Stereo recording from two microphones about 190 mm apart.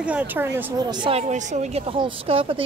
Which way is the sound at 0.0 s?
10° right (ahead or behind).